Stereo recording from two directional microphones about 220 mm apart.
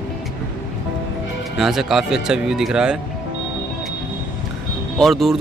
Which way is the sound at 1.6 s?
Centre (ahead or behind).